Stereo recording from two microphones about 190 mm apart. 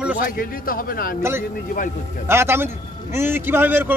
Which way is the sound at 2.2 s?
10° right (ahead or behind).